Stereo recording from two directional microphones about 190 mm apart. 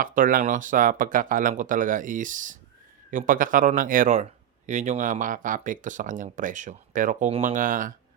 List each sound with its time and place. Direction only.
0.0 s speech: 45° right (ahead or behind)